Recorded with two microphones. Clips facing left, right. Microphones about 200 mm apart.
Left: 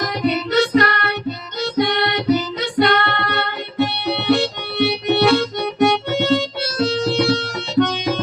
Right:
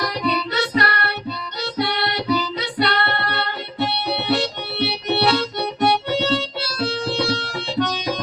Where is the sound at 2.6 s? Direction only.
50° left (ahead or behind).